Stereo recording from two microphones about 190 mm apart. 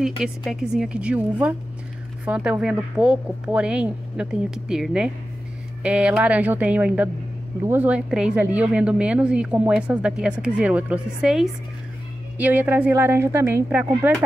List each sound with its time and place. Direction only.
0.0 s a woman's voice: centre (ahead or behind)